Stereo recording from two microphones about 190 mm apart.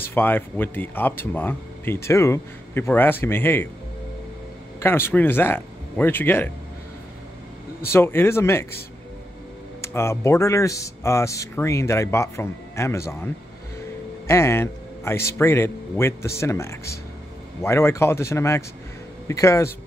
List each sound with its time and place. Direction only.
0.1 s speech: 10° left (ahead or behind)
4.7 s speech: 10° left (ahead or behind)
7.9 s speech: 10° left (ahead or behind)
9.8 s speech: 15° left (ahead or behind)